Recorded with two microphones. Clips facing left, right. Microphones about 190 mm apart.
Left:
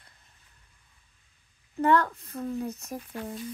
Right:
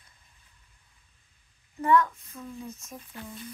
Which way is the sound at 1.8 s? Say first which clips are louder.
Even; 65° left (ahead or behind).